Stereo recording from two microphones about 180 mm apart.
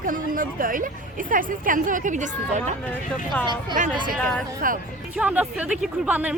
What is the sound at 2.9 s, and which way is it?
Speech, 10° left (ahead or behind).